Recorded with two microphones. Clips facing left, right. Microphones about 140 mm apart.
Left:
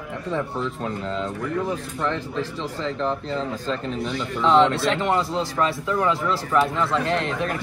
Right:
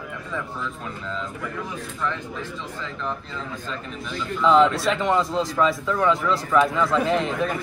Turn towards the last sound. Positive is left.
turn(degrees=0)  # may be behind; listen again after turning